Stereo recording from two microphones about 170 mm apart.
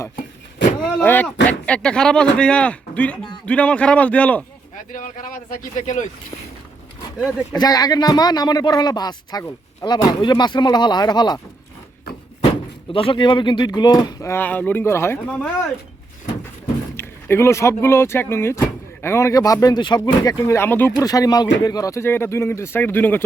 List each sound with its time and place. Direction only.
0.9 s speech: 5° left (ahead or behind)
4.9 s speech: 50° left (ahead or behind)
7.5 s speech: 25° left (ahead or behind)
12.5 s speech: 30° left (ahead or behind); by 15.5 s 5° left (ahead or behind)
17.0 s speech: 15° left (ahead or behind)